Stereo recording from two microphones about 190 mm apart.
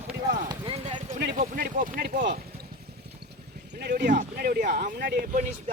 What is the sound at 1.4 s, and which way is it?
Speech, 45° right (ahead or behind).